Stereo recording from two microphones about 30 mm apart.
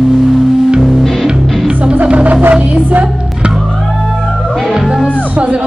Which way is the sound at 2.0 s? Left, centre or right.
Right.